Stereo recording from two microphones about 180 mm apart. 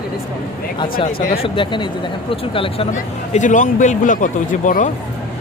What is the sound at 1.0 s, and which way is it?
Speech, 45° left (ahead or behind).